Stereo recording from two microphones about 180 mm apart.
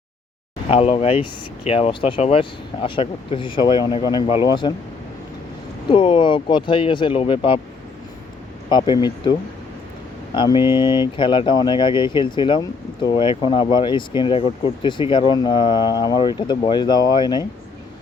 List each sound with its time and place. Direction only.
0.7 s speech: 35° left (ahead or behind)
5.9 s speech: 30° left (ahead or behind)
8.7 s speech: 25° left (ahead or behind)
10.3 s speech: 25° left (ahead or behind)